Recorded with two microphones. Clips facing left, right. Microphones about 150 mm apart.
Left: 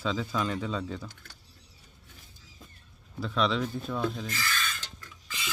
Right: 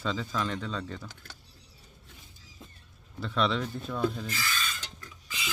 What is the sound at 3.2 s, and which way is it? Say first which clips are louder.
Speech: left 1 dB; centre (ahead or behind).